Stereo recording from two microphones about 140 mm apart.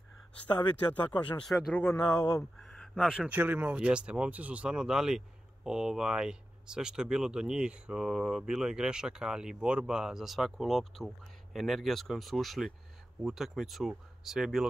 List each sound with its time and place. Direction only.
1.0 s speech: 35° left (ahead or behind)
1.5 s speech: 10° left (ahead or behind)
2.0 s speech: 25° left (ahead or behind)
2.6 s a sound: centre (ahead or behind)
3.3 s speech: 10° right (ahead or behind)